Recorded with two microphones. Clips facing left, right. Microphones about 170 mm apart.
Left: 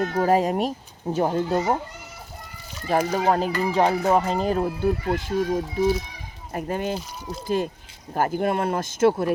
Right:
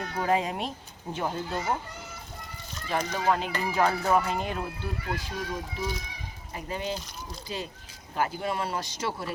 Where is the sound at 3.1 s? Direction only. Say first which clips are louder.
Left 6 dB; 40° left (ahead or behind).